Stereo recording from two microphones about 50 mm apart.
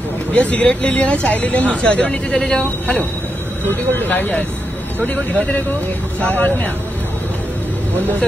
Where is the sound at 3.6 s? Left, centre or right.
Left.